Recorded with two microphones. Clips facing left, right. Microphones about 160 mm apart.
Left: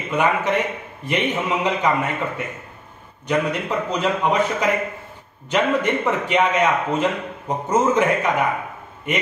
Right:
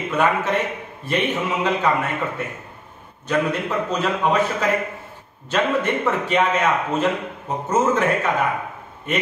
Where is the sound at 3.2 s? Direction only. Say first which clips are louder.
Even; 15° left (ahead or behind).